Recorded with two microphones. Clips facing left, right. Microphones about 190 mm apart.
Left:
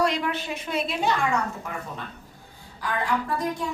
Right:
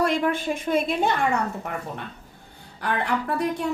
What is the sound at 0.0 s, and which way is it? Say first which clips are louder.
A woman's voice: right 3 dB; 50° right (ahead or behind).